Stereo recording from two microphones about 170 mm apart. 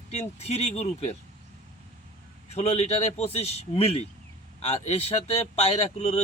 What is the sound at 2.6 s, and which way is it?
Speech, 40° left (ahead or behind).